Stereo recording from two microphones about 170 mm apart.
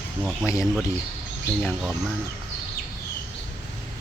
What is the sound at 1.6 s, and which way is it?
Speech, 5° right (ahead or behind).